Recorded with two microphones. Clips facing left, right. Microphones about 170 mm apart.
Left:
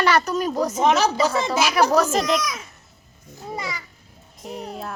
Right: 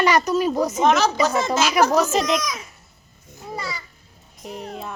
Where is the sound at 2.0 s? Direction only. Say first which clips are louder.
Even; 10° right (ahead or behind).